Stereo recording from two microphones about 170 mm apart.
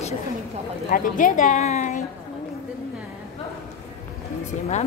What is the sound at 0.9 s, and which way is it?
Speech, 50° left (ahead or behind).